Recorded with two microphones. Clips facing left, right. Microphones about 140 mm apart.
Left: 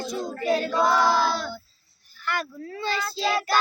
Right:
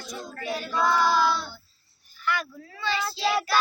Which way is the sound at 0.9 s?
90° left.